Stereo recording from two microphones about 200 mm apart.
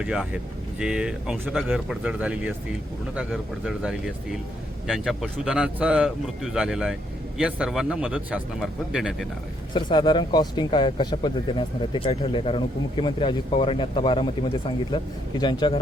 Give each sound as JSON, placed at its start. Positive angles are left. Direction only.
{"t": 0.0, "sound": "a man's voice", "side_deg": -5}
{"t": 9.7, "sound": "speech", "side_deg": 25}